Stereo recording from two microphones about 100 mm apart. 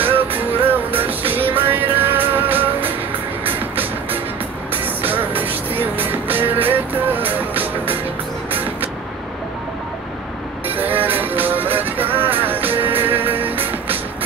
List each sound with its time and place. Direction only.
0.0 s music: 20° right (ahead or behind)
4.8 s music: 20° right (ahead or behind)
10.7 s music: 20° right (ahead or behind)